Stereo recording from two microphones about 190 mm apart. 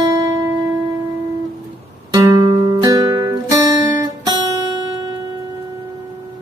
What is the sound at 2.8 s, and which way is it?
Music, 20° right (ahead or behind).